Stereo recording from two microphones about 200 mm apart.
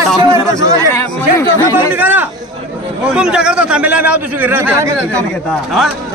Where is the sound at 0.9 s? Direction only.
15° left (ahead or behind).